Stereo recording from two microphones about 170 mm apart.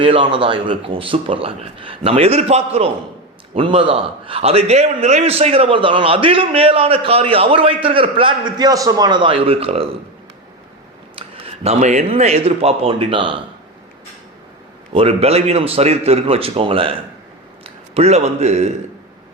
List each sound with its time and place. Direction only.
0.0 s a man's voice: 30° right (ahead or behind)
11.1 s speech: 35° right (ahead or behind)
14.9 s a man's voice: 35° right (ahead or behind)